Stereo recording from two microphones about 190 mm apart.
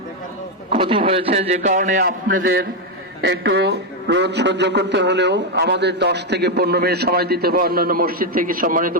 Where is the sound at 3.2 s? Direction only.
70° right (ahead or behind); by 9.0 s 45° right (ahead or behind).